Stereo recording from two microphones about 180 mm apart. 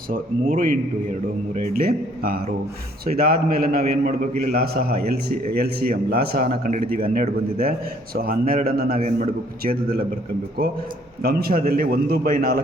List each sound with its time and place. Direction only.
0.1 s a man's voice: 50° right (ahead or behind)
11.2 s a man's voice: 60° right (ahead or behind)